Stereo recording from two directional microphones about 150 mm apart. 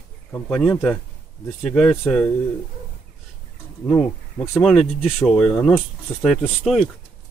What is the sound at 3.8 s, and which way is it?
Speech, centre (ahead or behind).